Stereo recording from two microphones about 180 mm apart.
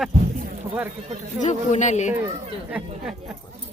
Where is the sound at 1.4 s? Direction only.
40° left (ahead or behind).